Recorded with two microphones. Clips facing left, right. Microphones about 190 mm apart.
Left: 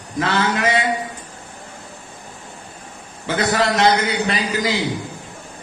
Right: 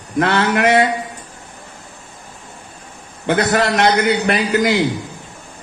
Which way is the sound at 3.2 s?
60° right (ahead or behind).